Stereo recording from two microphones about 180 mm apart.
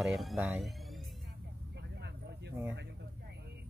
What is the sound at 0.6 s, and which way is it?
Music, centre (ahead or behind).